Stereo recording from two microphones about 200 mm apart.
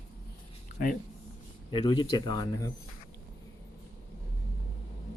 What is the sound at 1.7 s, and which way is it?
Speech, 25° left (ahead or behind).